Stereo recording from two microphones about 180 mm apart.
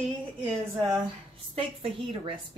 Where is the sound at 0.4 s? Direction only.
20° right (ahead or behind).